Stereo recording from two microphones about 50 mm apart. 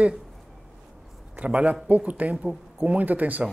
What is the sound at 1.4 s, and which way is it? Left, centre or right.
Speech, right.